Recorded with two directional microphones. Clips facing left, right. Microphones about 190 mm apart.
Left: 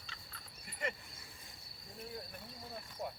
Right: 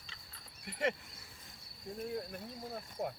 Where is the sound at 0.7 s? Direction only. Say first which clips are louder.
Right 7 dB; 70° right (ahead or behind).